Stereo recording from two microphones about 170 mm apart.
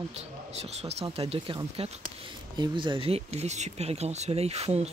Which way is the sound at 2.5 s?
25° right (ahead or behind).